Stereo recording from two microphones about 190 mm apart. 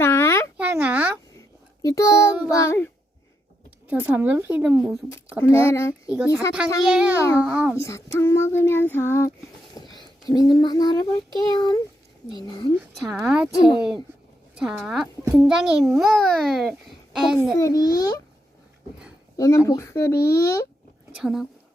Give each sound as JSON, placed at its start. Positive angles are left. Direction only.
{"t": 0.0, "sound": "a sound", "side_deg": 15}
{"t": 0.5, "sound": "a sound", "side_deg": -10}
{"t": 1.8, "sound": "child singing", "side_deg": 15}
{"t": 3.8, "sound": "a woman's voice", "side_deg": -10}
{"t": 5.6, "sound": "child singing", "side_deg": 15}
{"t": 6.1, "sound": "a child's voice", "side_deg": -5}
{"t": 7.2, "sound": "child singing", "side_deg": 15}
{"t": 7.4, "sound": "a child's voice", "side_deg": -5}
{"t": 7.8, "sound": "child singing", "side_deg": 15}
{"t": 12.8, "sound": "a child's voice", "side_deg": 0}
{"t": 17.6, "sound": "a child's voice", "side_deg": 20}
{"t": 19.4, "sound": "child singing", "side_deg": 15}
{"t": 21.2, "sound": "a child's voice", "side_deg": -5}